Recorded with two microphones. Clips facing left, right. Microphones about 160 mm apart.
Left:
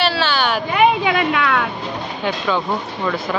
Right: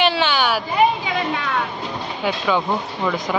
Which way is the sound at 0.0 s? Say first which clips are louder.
Even; 15° right (ahead or behind).